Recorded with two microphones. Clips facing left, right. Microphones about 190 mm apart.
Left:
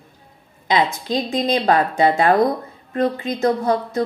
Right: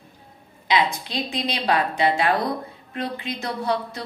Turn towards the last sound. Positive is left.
turn(degrees=45)  # may be behind; listen again after turning